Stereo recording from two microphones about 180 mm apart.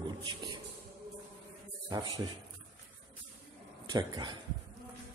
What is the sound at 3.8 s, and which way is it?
Speech, 25° right (ahead or behind).